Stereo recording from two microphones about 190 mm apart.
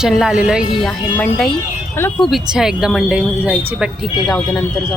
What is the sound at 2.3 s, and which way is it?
Speech, 5° right (ahead or behind).